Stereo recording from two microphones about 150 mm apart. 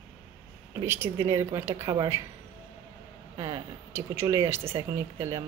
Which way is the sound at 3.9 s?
20° right (ahead or behind).